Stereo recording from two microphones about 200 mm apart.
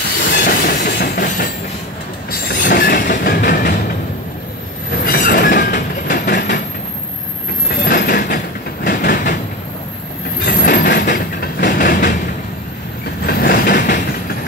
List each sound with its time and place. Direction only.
0.5 s train: 45° left (ahead or behind)
5.0 s train: 50° left (ahead or behind)
7.8 s train: 50° left (ahead or behind)
10.4 s train: 50° left (ahead or behind)
13.2 s train: 50° left (ahead or behind)